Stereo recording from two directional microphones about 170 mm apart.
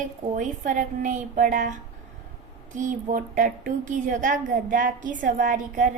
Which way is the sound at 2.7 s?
50° right (ahead or behind).